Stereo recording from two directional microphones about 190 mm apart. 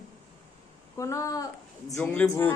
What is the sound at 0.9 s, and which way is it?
Speech, 15° left (ahead or behind).